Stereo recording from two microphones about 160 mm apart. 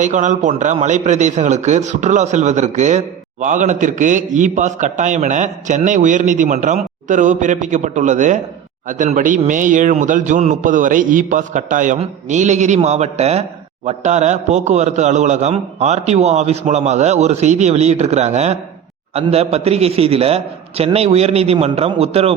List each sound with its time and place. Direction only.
0.0 s a man's voice: 50° right (ahead or behind)